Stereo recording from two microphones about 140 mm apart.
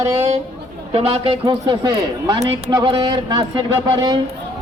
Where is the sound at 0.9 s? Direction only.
45° right (ahead or behind).